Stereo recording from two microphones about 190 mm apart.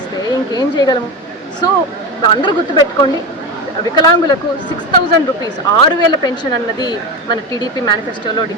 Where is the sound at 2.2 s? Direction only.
25° left (ahead or behind).